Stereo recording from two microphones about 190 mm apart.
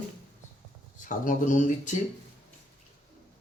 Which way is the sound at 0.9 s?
45° left (ahead or behind).